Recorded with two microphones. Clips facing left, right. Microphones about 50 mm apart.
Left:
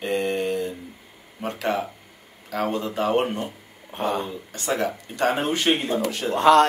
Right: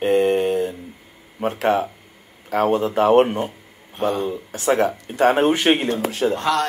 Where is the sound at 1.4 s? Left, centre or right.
Right.